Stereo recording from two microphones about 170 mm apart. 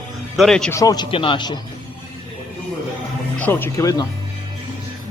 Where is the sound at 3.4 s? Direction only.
10° left (ahead or behind).